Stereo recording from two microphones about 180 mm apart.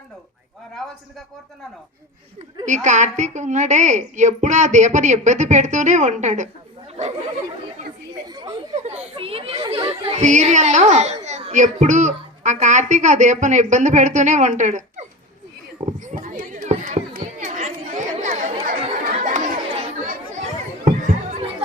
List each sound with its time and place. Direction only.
2.6 s a woman's voice: 40° right (ahead or behind)
8.9 s speech: 35° right (ahead or behind)
16.1 s chatter: 50° right (ahead or behind)
19.2 s children playing: 45° right (ahead or behind)
20.8 s chatter: 40° right (ahead or behind)